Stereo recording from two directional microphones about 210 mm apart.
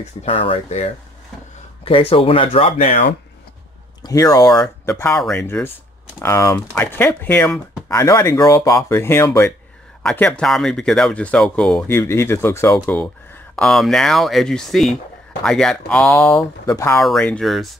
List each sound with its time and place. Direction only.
0.0 s speech: 30° left (ahead or behind)
4.0 s speech: 15° left (ahead or behind)
11.9 s speech: 10° left (ahead or behind)
17.0 s speech: 5° left (ahead or behind)